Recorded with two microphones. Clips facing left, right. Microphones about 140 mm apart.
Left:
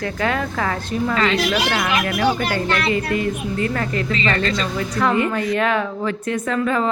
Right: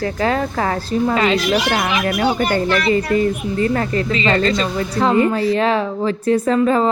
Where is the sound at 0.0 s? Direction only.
30° right (ahead or behind).